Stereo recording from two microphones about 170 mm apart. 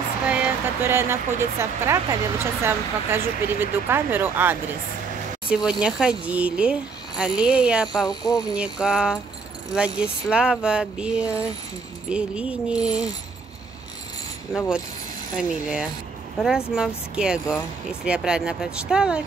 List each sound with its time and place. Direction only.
0.3 s speech: 10° right (ahead or behind)
8.1 s speech: 20° left (ahead or behind)
8.5 s speech: 5° right (ahead or behind)
14.5 s speech: 5° right (ahead or behind)